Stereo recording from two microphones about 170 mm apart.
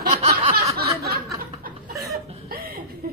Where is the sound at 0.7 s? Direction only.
65° right (ahead or behind).